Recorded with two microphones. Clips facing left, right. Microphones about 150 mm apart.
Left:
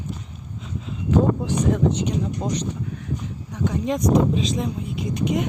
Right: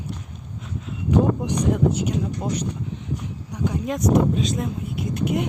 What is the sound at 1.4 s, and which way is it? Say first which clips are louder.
Speech: even; 10° right (ahead or behind).